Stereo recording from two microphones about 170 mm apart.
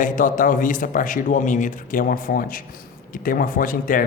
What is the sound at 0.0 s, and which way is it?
Speech, 50° left (ahead or behind).